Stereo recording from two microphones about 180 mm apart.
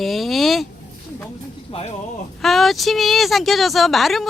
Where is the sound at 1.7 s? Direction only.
35° left (ahead or behind).